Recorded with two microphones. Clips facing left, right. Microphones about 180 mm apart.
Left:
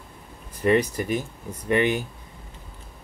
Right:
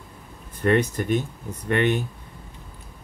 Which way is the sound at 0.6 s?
5° left (ahead or behind).